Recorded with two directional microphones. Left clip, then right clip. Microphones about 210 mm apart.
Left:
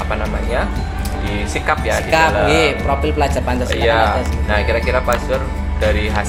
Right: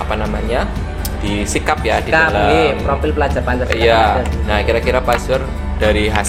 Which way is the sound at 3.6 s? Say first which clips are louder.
Right 3 dB; 45° right (ahead or behind).